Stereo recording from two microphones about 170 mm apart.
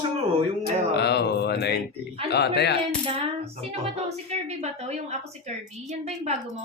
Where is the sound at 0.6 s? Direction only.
80° left.